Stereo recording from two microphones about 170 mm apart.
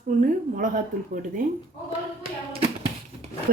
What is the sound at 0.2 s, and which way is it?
Speech, 55° right (ahead or behind).